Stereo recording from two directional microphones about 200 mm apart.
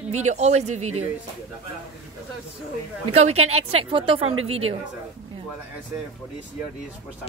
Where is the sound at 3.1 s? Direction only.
30° right (ahead or behind).